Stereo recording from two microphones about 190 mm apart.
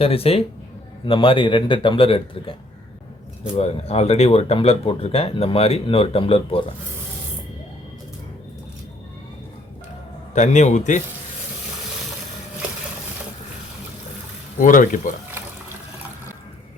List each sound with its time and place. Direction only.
0.0 s a man's voice: 30° left (ahead or behind)
3.6 s speech: 30° left (ahead or behind)
10.3 s speech: 40° left (ahead or behind)
14.6 s speech: 45° left (ahead or behind)